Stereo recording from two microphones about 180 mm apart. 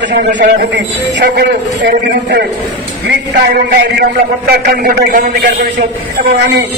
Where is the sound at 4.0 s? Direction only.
55° right (ahead or behind).